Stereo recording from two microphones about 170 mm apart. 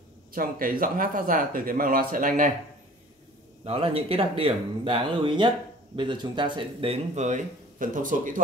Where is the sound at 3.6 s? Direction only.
35° right (ahead or behind); by 8.4 s 50° right (ahead or behind).